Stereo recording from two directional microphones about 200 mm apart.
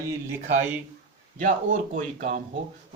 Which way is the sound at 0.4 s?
35° right (ahead or behind).